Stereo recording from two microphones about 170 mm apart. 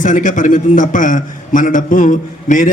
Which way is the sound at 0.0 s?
50° left (ahead or behind).